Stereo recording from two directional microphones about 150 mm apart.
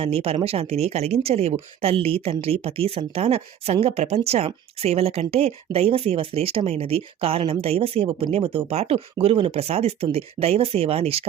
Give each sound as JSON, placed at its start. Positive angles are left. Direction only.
{"t": 0.0, "sound": "speech", "side_deg": -40}